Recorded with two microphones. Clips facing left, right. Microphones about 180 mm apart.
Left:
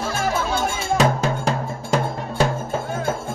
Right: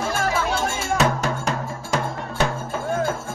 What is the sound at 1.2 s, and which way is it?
Music, 30° left (ahead or behind).